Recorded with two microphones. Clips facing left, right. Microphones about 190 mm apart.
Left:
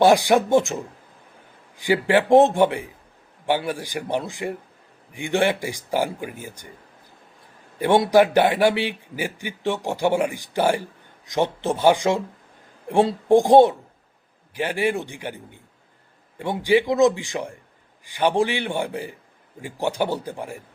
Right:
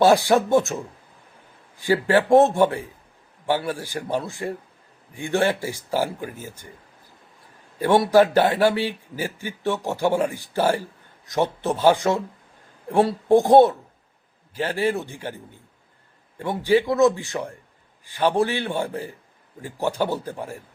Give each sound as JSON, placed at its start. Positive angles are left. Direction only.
{"t": 0.0, "sound": "a man's voice", "side_deg": 15}
{"t": 1.8, "sound": "a man's voice", "side_deg": 15}
{"t": 7.8, "sound": "a man's voice", "side_deg": 15}
{"t": 16.4, "sound": "a man's voice", "side_deg": 15}